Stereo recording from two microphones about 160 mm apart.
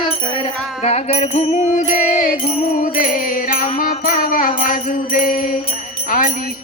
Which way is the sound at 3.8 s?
65° left (ahead or behind).